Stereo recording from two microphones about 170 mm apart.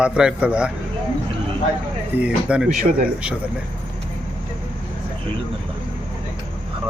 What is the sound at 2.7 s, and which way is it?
Speech, 55° right (ahead or behind).